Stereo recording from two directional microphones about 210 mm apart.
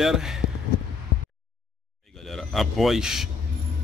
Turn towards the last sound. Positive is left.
turn(degrees=0)  # may be behind; listen again after turning